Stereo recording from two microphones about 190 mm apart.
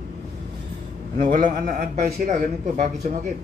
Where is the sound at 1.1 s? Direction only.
45° right (ahead or behind).